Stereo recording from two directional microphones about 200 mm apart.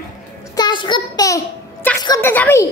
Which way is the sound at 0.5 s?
20° left (ahead or behind).